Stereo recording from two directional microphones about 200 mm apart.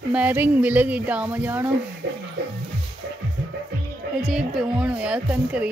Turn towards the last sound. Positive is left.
turn(degrees=-5)  # may be behind; listen again after turning